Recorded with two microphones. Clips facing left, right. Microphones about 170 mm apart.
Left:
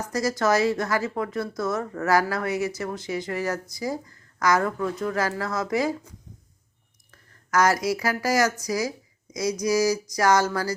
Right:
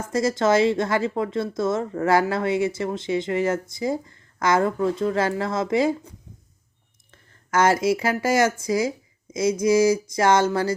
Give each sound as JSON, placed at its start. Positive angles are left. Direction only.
{"t": 0.0, "sound": "a woman's voice", "side_deg": -25}